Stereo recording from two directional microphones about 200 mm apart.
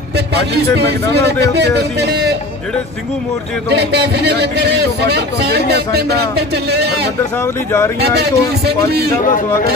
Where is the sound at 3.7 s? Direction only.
55° right (ahead or behind).